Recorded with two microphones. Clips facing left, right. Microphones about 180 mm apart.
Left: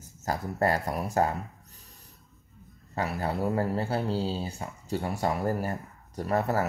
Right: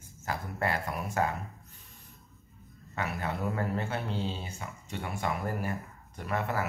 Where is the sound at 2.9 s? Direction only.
35° left (ahead or behind).